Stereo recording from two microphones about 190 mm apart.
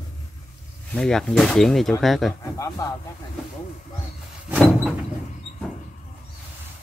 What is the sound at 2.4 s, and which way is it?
Speech, 15° left (ahead or behind).